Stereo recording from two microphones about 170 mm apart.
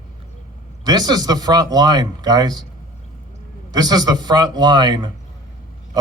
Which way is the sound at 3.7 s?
25° right (ahead or behind).